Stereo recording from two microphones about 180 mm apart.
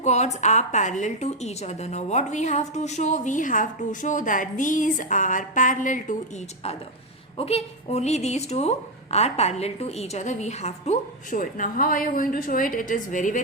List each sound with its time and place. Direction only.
0.0 s a woman's voice: 40° left (ahead or behind)
7.3 s speech: 35° left (ahead or behind)